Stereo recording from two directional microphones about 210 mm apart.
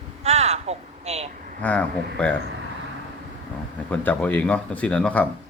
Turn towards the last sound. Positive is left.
turn(degrees=5)  # may be behind; listen again after turning